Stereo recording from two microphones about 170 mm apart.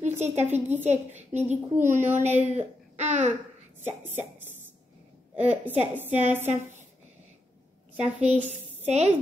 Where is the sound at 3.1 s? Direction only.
45° right (ahead or behind).